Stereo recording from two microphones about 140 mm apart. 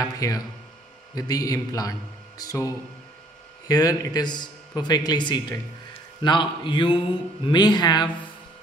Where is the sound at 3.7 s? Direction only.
25° left (ahead or behind).